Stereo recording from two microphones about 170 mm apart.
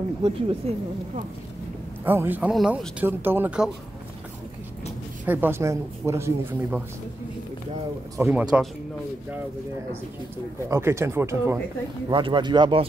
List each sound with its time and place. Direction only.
0.2 s speech: 35° right (ahead or behind)
2.0 s speech: 10° right (ahead or behind)
5.2 s speech: 10° right (ahead or behind)
8.2 s speech: 10° right (ahead or behind)
10.7 s speech: 15° right (ahead or behind)
12.1 s speech: 30° right (ahead or behind)